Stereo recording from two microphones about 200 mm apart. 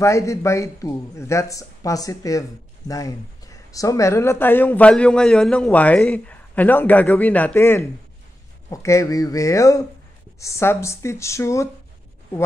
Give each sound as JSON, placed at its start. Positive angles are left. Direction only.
{"t": 0.0, "sound": "speech", "side_deg": 15}